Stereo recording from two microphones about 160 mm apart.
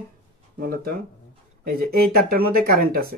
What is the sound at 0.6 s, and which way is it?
Speech, 70° right (ahead or behind).